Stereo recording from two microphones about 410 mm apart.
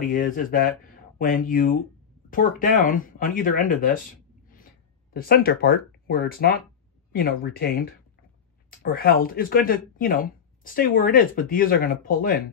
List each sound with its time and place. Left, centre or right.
0.1 s speech: centre
5.1 s speech: left